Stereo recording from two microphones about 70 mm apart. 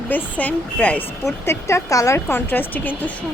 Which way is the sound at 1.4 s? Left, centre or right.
Left.